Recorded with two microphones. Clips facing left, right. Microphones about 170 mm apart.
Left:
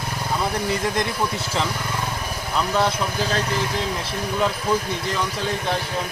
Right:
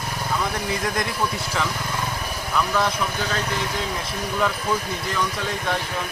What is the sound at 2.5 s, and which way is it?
Speech, 25° left (ahead or behind).